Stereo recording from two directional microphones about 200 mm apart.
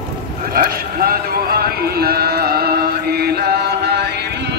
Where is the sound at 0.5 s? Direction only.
50° right (ahead or behind).